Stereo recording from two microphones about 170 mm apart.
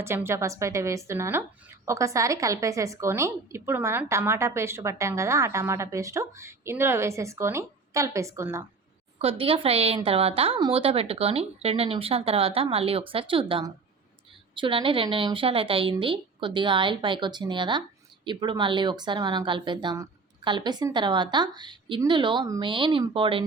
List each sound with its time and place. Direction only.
0.0 s speech: 15° right (ahead or behind)
9.1 s speech: 35° right (ahead or behind)